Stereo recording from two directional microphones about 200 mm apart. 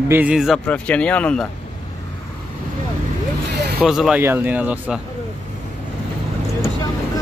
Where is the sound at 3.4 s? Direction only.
55° right (ahead or behind).